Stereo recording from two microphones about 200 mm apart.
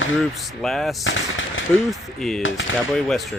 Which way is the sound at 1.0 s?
75° left (ahead or behind).